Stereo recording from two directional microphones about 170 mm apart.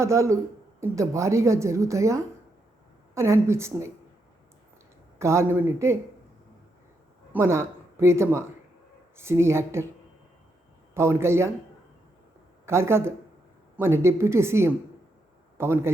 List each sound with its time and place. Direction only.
0.0 s speech: 15° right (ahead or behind)
5.2 s speech: 15° right (ahead or behind)
7.3 s a man's voice: 15° right (ahead or behind)
10.9 s speech: 15° right (ahead or behind)
12.6 s a man's voice: 15° right (ahead or behind)